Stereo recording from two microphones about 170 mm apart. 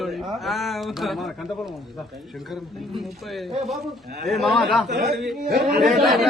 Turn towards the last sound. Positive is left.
turn(degrees=0)  # may be behind; listen again after turning